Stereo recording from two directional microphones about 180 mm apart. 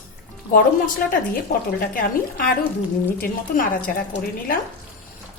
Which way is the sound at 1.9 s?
55° left (ahead or behind).